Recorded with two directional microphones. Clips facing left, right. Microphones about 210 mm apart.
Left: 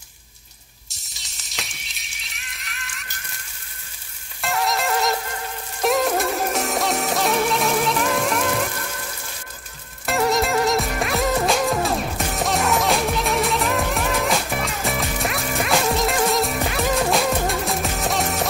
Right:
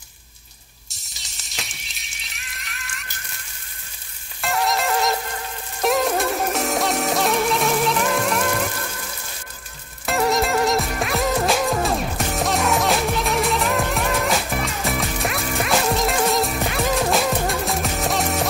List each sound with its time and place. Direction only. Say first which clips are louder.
0.8 s music: even; centre (ahead or behind)
4.4 s frying: right 1 dB; centre (ahead or behind)
5.8 s music: even; centre (ahead or behind)
10.0 s music: even; centre (ahead or behind)